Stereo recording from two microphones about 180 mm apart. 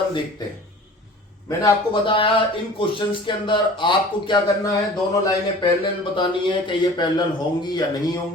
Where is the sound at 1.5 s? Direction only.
25° left (ahead or behind).